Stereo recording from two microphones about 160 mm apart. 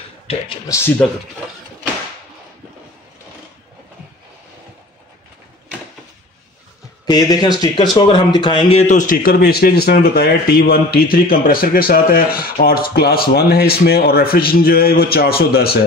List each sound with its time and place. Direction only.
7.1 s speech: 25° left (ahead or behind); by 15.8 s 70° left (ahead or behind)